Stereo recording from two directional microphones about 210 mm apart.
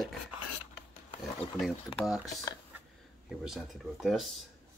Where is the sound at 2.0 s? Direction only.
Centre (ahead or behind).